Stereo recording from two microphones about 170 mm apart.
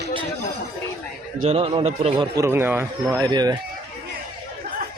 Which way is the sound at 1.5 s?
35° right (ahead or behind).